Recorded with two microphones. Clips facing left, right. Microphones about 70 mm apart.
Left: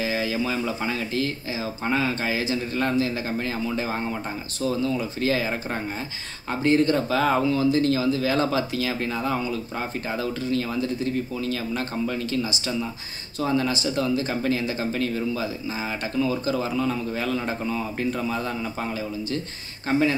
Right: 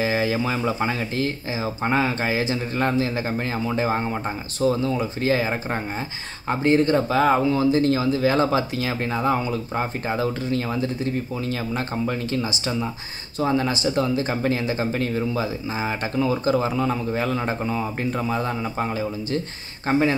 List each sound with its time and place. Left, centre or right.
0.0 s speech: right
0.8 s speech: right
2.4 s speech: right
2.8 s speech: right
4.6 s speech: right
5.2 s speech: right
9.2 s speech: right
11.4 s speech: right